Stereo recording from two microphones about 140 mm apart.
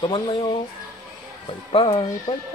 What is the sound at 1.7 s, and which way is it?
Speech, 40° left (ahead or behind).